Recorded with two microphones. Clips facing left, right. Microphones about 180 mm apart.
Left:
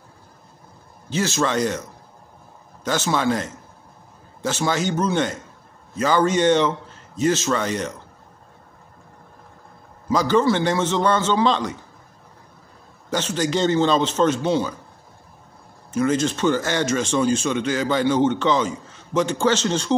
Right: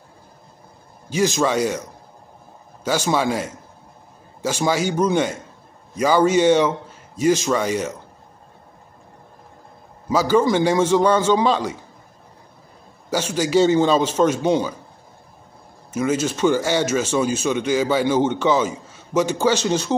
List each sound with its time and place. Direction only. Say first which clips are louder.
1.1 s speech: right 3 dB; 15° right (ahead or behind)
10.0 s speech: right 1 dB; 10° right (ahead or behind)
13.1 s speech: right 3 dB; 10° right (ahead or behind)
15.9 s speech: left 1 dB; 10° right (ahead or behind)